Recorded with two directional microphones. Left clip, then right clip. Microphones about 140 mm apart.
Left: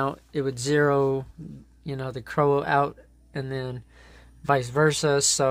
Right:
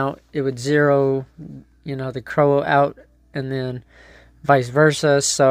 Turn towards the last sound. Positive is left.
turn(degrees=-30)  # may be behind; listen again after turning